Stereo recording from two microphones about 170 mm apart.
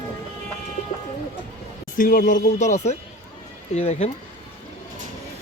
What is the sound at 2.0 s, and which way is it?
Speech, 55° left (ahead or behind).